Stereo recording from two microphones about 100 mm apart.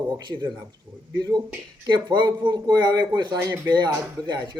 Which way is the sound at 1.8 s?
45° right (ahead or behind).